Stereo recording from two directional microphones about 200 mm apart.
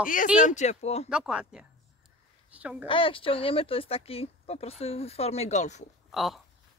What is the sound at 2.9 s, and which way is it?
Speech, 25° left (ahead or behind).